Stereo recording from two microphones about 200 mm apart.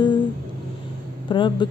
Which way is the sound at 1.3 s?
25° left (ahead or behind).